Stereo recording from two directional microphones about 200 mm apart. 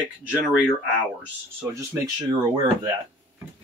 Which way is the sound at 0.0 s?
5° right (ahead or behind).